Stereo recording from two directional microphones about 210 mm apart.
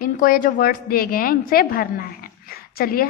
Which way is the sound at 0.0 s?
40° left (ahead or behind).